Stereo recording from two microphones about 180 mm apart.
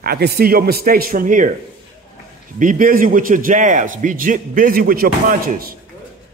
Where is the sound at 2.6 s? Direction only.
50° right (ahead or behind).